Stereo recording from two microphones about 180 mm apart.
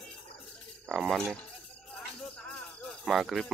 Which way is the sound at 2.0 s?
5° left (ahead or behind).